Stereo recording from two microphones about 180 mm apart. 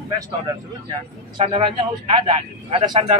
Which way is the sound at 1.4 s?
30° right (ahead or behind).